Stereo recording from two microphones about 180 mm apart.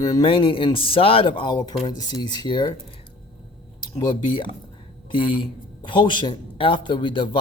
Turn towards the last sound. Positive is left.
turn(degrees=30)  # may be behind; listen again after turning